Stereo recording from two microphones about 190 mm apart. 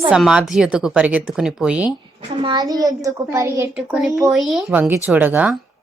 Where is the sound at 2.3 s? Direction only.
25° right (ahead or behind).